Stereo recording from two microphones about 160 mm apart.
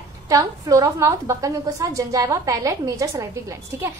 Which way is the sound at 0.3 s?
20° right (ahead or behind).